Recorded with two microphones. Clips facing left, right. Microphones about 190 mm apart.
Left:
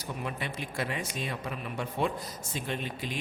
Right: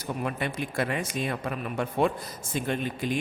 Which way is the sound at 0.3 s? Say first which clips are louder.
Right 5 dB; 55° right (ahead or behind).